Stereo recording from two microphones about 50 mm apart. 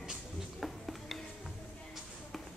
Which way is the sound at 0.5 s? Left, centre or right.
Centre.